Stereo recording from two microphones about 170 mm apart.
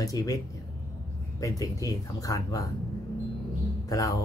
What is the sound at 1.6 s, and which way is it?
Speech, 20° left (ahead or behind).